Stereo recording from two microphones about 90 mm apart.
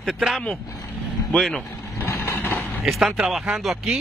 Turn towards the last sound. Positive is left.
turn(degrees=-5)  # may be behind; listen again after turning